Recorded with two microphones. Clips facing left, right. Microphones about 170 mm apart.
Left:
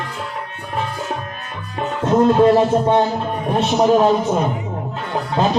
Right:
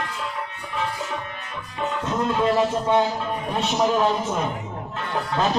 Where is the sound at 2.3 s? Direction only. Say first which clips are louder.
Left 8 dB; 40° left (ahead or behind).